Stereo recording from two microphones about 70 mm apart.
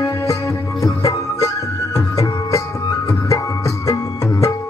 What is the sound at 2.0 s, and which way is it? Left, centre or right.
Music, left.